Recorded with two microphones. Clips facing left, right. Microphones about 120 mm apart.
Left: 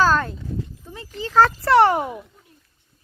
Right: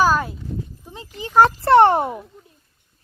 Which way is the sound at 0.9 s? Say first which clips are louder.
Right 1 dB; 20° right (ahead or behind).